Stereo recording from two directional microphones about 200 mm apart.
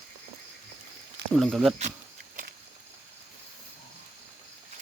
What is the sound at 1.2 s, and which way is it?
Speech, centre (ahead or behind).